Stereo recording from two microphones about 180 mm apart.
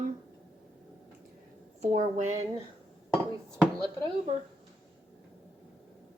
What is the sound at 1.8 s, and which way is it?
Speech, 40° right (ahead or behind).